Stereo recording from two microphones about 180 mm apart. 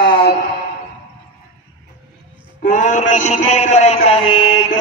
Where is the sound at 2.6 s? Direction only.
45° left (ahead or behind).